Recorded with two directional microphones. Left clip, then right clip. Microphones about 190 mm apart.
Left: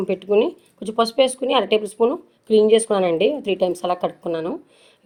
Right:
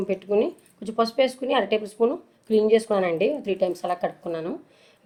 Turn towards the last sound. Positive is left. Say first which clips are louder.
# left 5 dB
turn(degrees=35)  # may be behind; listen again after turning